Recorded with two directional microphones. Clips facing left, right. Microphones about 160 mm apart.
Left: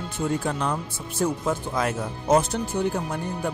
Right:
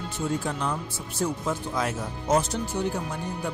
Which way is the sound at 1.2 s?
60° left (ahead or behind).